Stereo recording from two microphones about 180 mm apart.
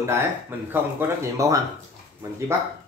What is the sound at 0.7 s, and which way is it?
Speech, 15° right (ahead or behind).